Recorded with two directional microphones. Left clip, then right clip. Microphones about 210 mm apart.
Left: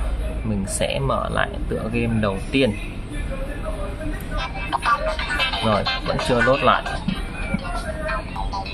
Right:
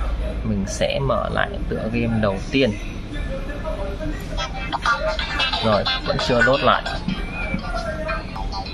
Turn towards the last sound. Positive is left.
turn(degrees=-5)  # may be behind; listen again after turning